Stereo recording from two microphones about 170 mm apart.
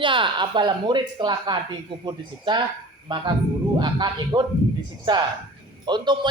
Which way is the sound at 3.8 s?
25° right (ahead or behind).